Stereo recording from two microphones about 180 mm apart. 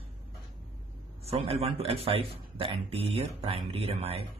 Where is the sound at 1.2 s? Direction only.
35° right (ahead or behind).